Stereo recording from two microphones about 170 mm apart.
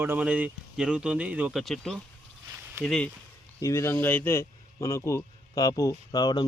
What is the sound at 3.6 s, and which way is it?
Speech, 15° left (ahead or behind).